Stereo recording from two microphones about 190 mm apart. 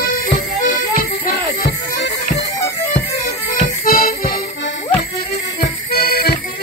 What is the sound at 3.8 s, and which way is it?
Accordion, 50° left (ahead or behind).